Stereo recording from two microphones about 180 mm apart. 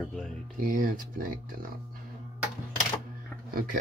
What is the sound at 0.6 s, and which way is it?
Speech, 50° right (ahead or behind).